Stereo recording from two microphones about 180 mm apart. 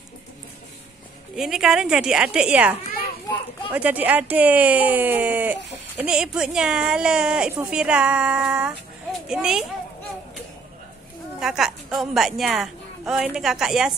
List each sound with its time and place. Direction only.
1.3 s speech: 5° right (ahead or behind)
3.7 s speech: 10° right (ahead or behind)
11.3 s speech: centre (ahead or behind)